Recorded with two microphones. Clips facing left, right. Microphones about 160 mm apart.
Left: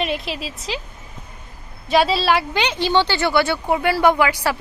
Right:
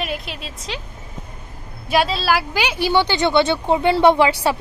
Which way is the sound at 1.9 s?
Centre (ahead or behind).